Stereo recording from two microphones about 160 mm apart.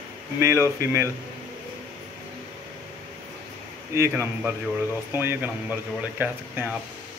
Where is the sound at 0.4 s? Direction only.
15° right (ahead or behind).